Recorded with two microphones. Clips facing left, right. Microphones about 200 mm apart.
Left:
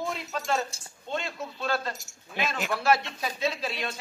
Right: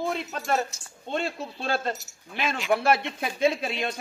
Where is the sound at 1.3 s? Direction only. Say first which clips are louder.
Right 1 dB; 30° right (ahead or behind).